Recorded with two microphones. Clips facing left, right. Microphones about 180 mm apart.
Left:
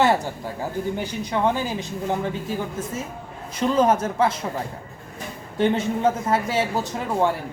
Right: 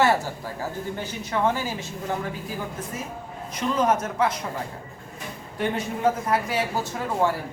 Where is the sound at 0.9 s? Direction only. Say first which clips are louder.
Left 2 dB; 15° left (ahead or behind).